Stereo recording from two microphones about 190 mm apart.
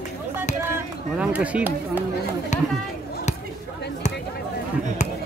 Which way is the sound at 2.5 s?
40° left (ahead or behind).